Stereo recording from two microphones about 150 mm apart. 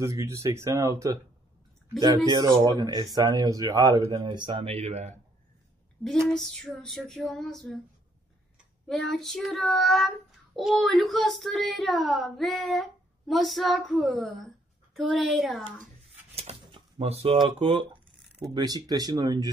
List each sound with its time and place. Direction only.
0.0 s speech: 20° right (ahead or behind); by 5.1 s 50° right (ahead or behind)
6.0 s child singing: 5° left (ahead or behind)
16.3 s speech: 45° right (ahead or behind); by 19.5 s 25° right (ahead or behind)